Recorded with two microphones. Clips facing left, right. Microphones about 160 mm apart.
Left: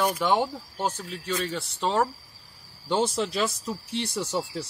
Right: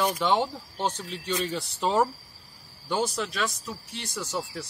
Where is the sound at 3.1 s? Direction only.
30° left (ahead or behind).